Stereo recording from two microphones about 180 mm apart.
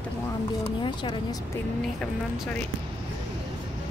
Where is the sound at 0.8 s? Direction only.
25° left (ahead or behind).